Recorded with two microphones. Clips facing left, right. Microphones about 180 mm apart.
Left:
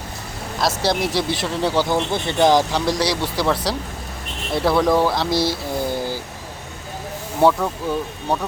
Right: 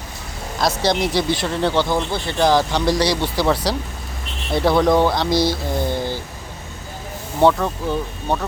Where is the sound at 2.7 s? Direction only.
Centre (ahead or behind).